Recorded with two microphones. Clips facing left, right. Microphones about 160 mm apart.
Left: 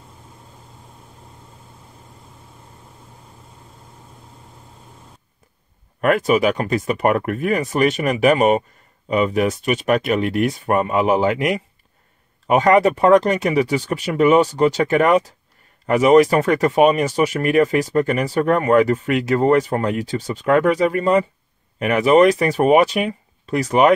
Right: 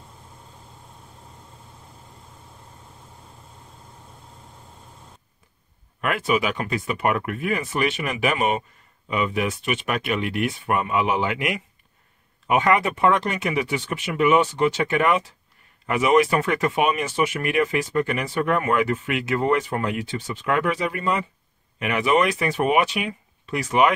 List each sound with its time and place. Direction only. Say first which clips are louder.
5.9 s speech: left 7 dB; 45° left (ahead or behind)